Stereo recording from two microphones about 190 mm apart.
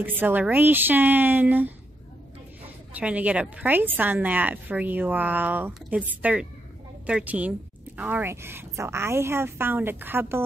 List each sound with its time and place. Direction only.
0.0 s a woman's voice: 10° right (ahead or behind)
2.9 s a woman's voice: 5° right (ahead or behind)